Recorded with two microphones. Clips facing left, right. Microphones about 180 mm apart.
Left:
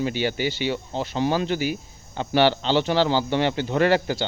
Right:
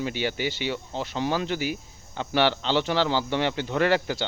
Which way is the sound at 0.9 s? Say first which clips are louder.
Left 4 dB; 20° left (ahead or behind).